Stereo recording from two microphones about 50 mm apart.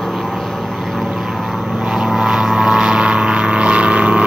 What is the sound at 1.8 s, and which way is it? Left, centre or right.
Vehicle, centre.